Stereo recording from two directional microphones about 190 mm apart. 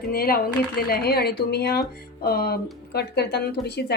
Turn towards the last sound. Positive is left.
turn(degrees=60)  # may be behind; listen again after turning